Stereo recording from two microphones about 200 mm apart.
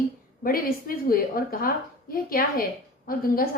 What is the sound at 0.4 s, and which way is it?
A woman's voice, 45° left (ahead or behind).